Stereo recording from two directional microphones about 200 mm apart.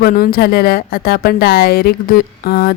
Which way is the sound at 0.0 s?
45° left (ahead or behind).